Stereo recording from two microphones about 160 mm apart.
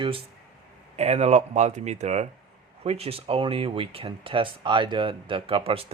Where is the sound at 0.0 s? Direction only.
35° right (ahead or behind).